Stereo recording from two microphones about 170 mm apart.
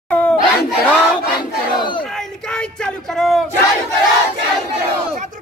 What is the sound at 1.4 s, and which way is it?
Battle cry, 30° left (ahead or behind).